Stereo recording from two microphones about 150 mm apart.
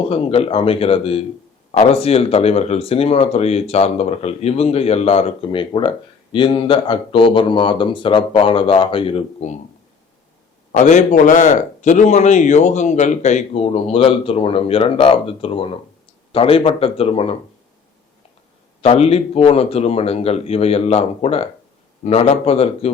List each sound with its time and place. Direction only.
0.1 s a man's voice: 40° left (ahead or behind)
10.7 s a man's voice: 55° left (ahead or behind)
18.8 s a man's voice: 45° left (ahead or behind)